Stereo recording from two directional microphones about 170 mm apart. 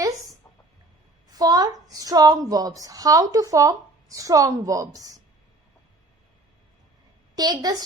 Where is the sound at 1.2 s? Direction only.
20° right (ahead or behind).